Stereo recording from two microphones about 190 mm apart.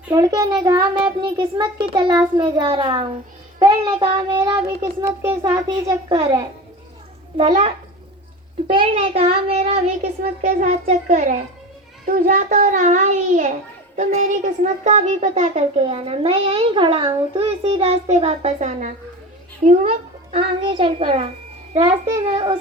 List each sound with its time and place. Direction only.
0.1 s a child's voice: 20° right (ahead or behind)